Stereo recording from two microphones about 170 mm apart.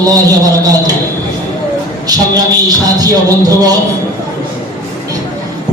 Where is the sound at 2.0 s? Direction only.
20° right (ahead or behind).